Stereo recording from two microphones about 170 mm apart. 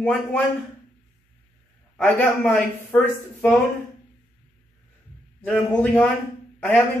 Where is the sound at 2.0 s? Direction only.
10° left (ahead or behind).